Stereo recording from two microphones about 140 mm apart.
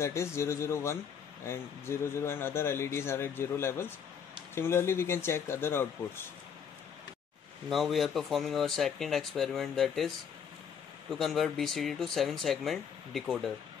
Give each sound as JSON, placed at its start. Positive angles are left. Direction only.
{"t": 0.0, "sound": "speech", "side_deg": 20}
{"t": 7.7, "sound": "speech", "side_deg": 0}